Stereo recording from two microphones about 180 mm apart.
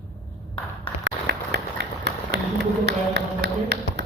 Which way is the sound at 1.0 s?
70° right (ahead or behind).